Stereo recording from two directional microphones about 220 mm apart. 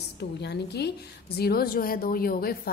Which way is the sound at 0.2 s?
50° left (ahead or behind).